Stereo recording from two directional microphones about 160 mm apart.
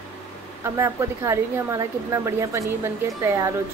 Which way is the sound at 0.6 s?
15° right (ahead or behind).